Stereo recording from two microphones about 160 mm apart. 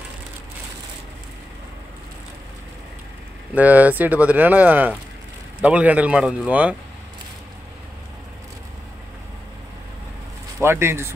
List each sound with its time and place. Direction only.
3.5 s speech: 10° right (ahead or behind)
10.6 s speech: 15° right (ahead or behind)